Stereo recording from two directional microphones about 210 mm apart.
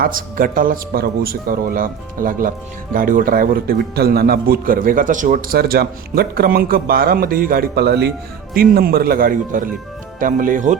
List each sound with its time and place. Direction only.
0.0 s a man's voice: 40° right (ahead or behind)